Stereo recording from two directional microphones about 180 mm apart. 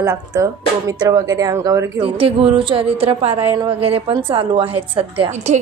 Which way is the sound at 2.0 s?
30° right (ahead or behind).